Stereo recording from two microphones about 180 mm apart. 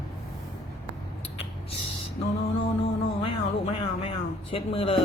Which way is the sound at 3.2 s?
30° left (ahead or behind).